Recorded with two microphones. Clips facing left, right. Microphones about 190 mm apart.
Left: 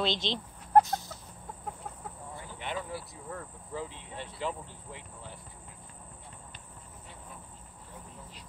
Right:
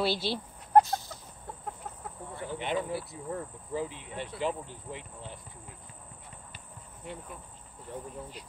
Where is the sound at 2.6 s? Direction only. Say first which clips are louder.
Right 5 dB; 20° right (ahead or behind).